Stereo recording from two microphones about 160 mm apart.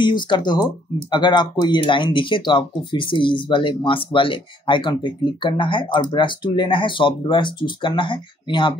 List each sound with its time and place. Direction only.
0.0 s speech: 30° left (ahead or behind)